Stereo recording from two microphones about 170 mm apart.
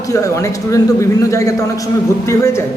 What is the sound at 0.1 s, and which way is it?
A man's voice, 20° left (ahead or behind).